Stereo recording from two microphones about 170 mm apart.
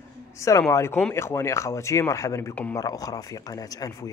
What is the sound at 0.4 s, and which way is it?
A man's voice, 20° left (ahead or behind).